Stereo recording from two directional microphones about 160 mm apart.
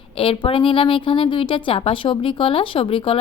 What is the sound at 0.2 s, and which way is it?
A woman's voice, 35° left (ahead or behind).